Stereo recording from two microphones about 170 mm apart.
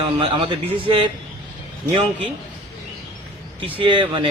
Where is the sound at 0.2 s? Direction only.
30° right (ahead or behind).